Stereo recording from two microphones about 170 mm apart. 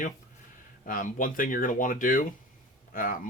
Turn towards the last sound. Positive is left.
turn(degrees=55)  # may be behind; listen again after turning